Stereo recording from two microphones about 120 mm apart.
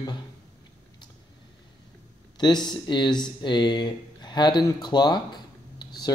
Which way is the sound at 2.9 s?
40° left (ahead or behind).